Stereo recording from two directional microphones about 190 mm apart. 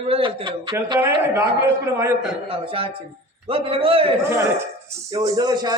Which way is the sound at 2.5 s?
30° right (ahead or behind).